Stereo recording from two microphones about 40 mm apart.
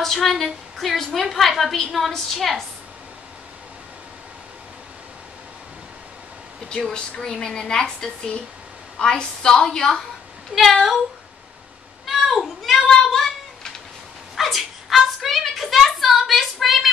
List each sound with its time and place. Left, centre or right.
0.0 s a woman's voice: centre
6.7 s a woman's voice: centre
12.1 s a sound: centre
14.3 s a woman's voice: centre